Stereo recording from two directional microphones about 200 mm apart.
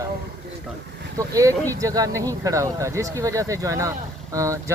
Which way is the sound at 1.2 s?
15° right (ahead or behind).